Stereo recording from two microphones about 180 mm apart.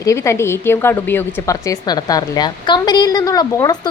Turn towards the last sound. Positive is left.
turn(degrees=20)  # may be behind; listen again after turning